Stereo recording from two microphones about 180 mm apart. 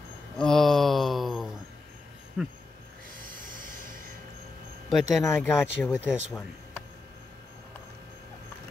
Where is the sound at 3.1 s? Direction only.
50° right (ahead or behind).